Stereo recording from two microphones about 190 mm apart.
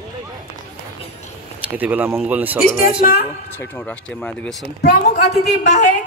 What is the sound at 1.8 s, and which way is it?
Speech, 10° right (ahead or behind).